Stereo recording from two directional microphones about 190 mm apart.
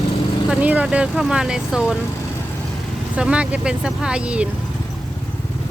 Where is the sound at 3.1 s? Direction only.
5° right (ahead or behind).